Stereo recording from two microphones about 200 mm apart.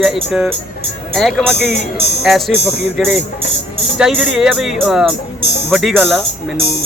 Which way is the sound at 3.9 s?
5° right (ahead or behind).